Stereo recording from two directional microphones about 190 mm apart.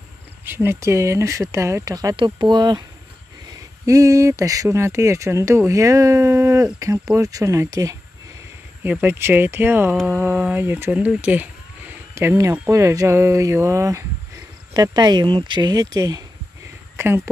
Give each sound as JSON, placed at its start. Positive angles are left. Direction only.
{"t": 0.5, "sound": "speech", "side_deg": -10}
{"t": 3.8, "sound": "speech", "side_deg": -15}